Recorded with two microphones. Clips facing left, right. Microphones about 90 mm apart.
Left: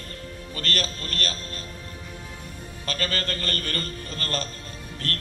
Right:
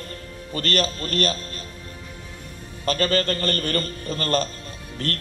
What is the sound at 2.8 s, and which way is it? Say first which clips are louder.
A man's voice: right 8 dB; 35° right (ahead or behind).